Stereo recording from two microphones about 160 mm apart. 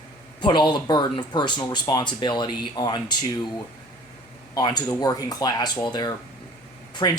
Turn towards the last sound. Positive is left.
turn(degrees=25)  # may be behind; listen again after turning